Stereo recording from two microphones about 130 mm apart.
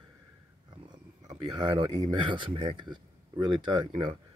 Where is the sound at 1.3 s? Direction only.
40° right (ahead or behind).